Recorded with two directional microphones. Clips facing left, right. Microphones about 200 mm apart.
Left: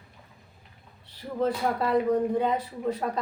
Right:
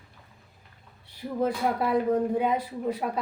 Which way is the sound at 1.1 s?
10° right (ahead or behind).